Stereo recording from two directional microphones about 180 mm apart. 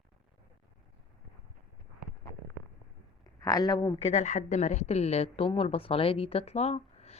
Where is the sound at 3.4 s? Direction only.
20° left (ahead or behind).